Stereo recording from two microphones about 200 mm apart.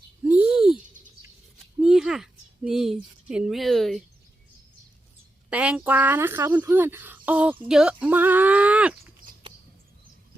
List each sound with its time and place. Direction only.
0.3 s a sound: 5° right (ahead or behind)
1.8 s speech: 5° right (ahead or behind)
5.5 s speech: 5° right (ahead or behind)